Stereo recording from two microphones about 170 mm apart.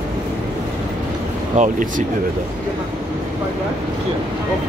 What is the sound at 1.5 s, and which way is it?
Speech, 45° right (ahead or behind).